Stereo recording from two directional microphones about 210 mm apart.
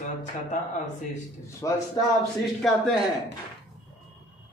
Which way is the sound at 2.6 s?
Centre (ahead or behind).